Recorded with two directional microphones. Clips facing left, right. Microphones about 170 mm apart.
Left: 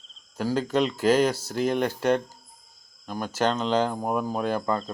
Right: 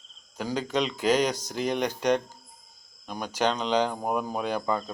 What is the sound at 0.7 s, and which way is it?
Speech, 5° left (ahead or behind).